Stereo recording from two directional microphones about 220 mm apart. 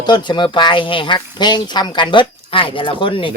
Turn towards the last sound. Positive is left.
turn(degrees=20)  # may be behind; listen again after turning